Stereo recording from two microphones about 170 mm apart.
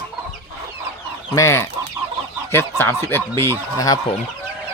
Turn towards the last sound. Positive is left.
turn(degrees=20)  # may be behind; listen again after turning